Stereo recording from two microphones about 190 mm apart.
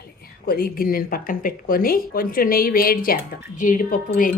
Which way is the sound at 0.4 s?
50° left (ahead or behind).